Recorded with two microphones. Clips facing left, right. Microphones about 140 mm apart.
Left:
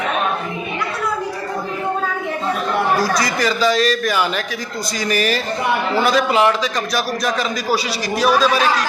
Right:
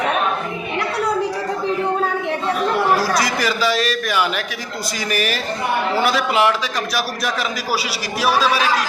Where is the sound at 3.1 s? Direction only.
5° right (ahead or behind).